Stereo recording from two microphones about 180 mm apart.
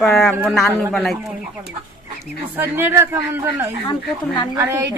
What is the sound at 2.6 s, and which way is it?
A man's voice, 10° right (ahead or behind).